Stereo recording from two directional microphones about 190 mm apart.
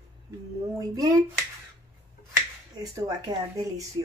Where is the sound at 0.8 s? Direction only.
20° right (ahead or behind).